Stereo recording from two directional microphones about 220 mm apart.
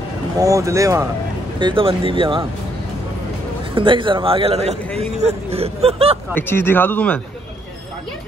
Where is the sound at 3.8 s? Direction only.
25° right (ahead or behind).